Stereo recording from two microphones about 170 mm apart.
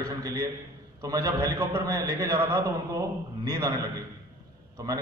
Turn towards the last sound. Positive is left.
turn(degrees=-20)  # may be behind; listen again after turning